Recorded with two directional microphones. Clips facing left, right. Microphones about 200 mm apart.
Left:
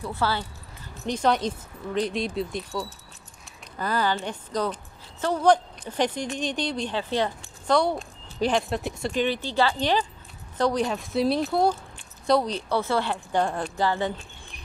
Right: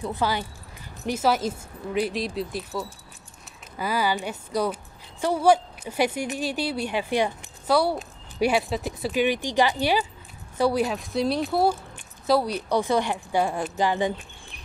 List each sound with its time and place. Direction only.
0.0 s speech: 15° right (ahead or behind)